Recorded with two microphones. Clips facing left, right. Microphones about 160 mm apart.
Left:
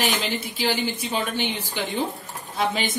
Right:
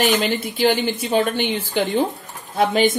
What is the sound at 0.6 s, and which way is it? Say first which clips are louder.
A woman's voice: right 7 dB; 55° right (ahead or behind).